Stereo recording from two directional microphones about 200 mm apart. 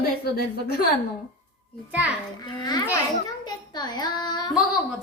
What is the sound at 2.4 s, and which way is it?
A child's voice, 20° left (ahead or behind).